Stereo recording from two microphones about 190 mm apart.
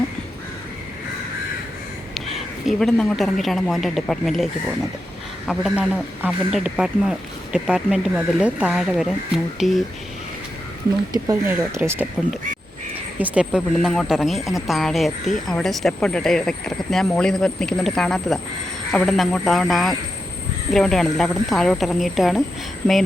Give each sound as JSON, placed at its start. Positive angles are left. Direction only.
{"t": 2.6, "sound": "speech", "side_deg": 0}
{"t": 5.5, "sound": "speech", "side_deg": 0}
{"t": 11.1, "sound": "speech", "side_deg": -15}